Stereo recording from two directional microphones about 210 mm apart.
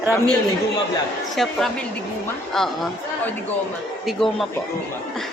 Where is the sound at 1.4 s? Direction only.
Centre (ahead or behind).